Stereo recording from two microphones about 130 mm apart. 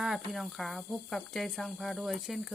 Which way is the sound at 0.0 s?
5° right (ahead or behind).